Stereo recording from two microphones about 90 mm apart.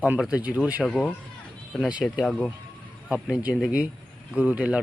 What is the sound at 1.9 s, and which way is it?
Speech, 10° right (ahead or behind).